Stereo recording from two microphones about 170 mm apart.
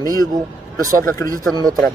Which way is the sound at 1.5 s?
20° right (ahead or behind).